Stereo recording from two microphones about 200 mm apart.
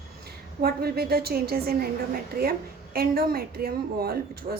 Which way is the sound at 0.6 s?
50° right (ahead or behind).